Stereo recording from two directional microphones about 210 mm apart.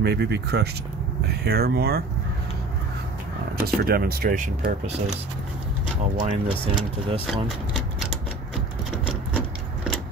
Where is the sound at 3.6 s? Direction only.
45° right (ahead or behind).